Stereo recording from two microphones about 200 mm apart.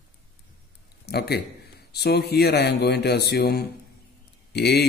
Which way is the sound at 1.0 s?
50° left (ahead or behind).